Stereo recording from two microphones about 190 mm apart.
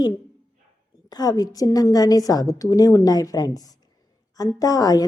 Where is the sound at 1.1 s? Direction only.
20° left (ahead or behind).